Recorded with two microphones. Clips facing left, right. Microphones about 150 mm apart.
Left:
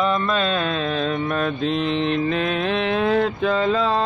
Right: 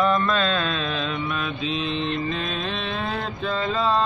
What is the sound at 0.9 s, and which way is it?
Mantra, 45° left (ahead or behind).